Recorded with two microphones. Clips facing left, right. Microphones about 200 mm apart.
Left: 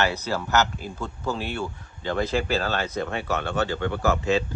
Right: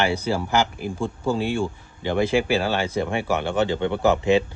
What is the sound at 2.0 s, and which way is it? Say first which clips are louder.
A man's voice: right 4 dB; 10° right (ahead or behind).